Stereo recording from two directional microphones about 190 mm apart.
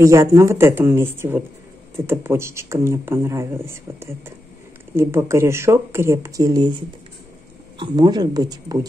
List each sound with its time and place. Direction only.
0.0 s speech: 15° right (ahead or behind)
7.8 s speech: 20° right (ahead or behind)